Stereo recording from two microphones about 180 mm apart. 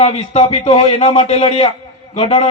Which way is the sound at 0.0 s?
35° left (ahead or behind).